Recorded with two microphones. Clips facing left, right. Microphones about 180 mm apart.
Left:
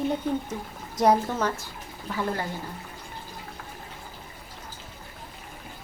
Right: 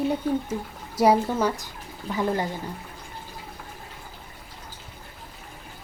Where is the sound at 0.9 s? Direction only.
10° right (ahead or behind).